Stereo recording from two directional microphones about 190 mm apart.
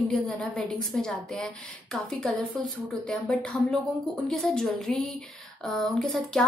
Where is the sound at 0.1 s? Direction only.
5° left (ahead or behind).